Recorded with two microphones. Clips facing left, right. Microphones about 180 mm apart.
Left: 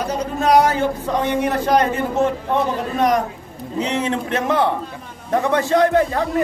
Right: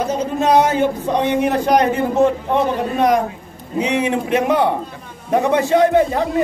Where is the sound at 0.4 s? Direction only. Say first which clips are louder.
Right 1 dB; 20° right (ahead or behind).